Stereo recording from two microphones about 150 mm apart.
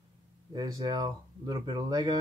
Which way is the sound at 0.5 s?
25° right (ahead or behind).